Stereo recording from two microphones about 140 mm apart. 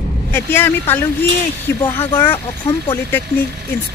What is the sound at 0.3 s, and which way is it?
Speech, 15° left (ahead or behind).